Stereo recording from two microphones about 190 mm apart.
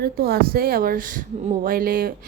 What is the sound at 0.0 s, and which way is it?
A woman's voice, 55° right (ahead or behind).